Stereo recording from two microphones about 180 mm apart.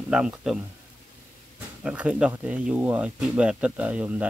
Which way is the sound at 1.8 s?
5° right (ahead or behind).